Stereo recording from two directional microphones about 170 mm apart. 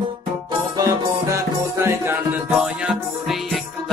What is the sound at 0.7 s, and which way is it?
Music, 20° right (ahead or behind).